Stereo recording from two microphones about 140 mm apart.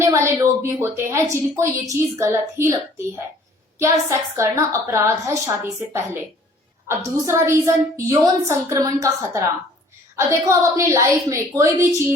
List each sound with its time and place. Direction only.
0.1 s a woman's voice: 20° right (ahead or behind)
3.8 s a woman's voice: 20° right (ahead or behind)